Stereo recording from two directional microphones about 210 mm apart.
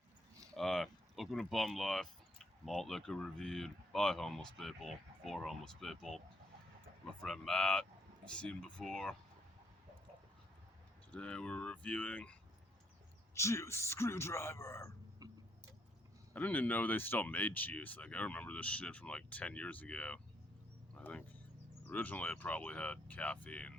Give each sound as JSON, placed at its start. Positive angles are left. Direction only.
{"t": 0.5, "sound": "speech", "side_deg": 0}
{"t": 11.1, "sound": "speech", "side_deg": 5}
{"t": 15.2, "sound": "tick-tock", "side_deg": -20}
{"t": 16.3, "sound": "speech", "side_deg": 10}
{"t": 20.9, "sound": "a sound", "side_deg": 5}
{"t": 21.8, "sound": "speech", "side_deg": 5}